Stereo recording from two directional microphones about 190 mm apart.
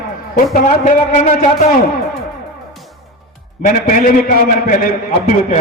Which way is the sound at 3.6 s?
45° left (ahead or behind).